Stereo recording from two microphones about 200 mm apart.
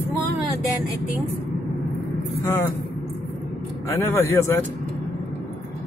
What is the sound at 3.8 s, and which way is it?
Speech, 15° left (ahead or behind).